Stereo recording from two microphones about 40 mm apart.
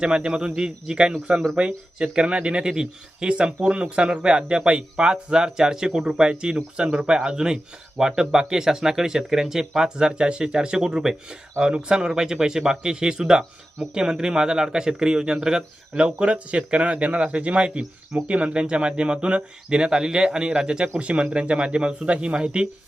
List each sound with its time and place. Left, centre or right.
0.0 s speech: right
11.6 s speech: right